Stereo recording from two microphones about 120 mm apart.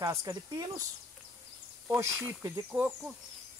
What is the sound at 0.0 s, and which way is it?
Speech, 25° right (ahead or behind).